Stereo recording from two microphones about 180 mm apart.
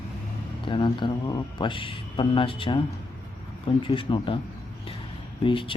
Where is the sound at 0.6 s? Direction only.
25° left (ahead or behind).